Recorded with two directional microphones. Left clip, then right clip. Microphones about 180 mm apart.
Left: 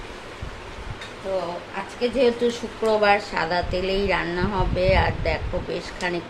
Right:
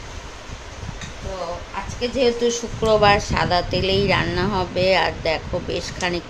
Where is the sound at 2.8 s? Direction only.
30° right (ahead or behind).